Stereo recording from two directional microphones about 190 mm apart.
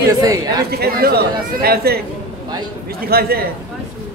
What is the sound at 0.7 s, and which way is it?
A man's voice, 55° right (ahead or behind).